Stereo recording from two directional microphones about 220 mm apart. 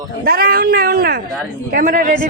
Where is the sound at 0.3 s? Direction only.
40° right (ahead or behind).